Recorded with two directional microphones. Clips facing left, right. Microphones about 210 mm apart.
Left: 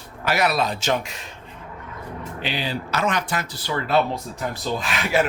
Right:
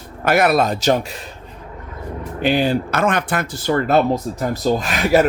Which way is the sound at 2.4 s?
50° right (ahead or behind).